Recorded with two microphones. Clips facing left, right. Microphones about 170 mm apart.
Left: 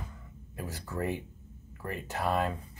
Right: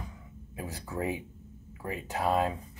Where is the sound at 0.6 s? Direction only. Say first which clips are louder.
Right 1 dB; 10° right (ahead or behind).